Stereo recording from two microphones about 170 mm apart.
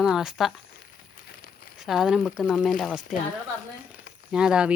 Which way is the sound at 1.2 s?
60° left (ahead or behind).